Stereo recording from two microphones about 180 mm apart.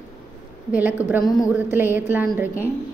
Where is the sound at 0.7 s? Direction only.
10° right (ahead or behind).